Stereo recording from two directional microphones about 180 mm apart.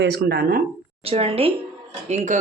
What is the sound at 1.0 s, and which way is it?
A woman's voice, 30° right (ahead or behind).